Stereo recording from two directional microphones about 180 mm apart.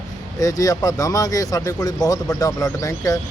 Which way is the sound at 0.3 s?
20° left (ahead or behind).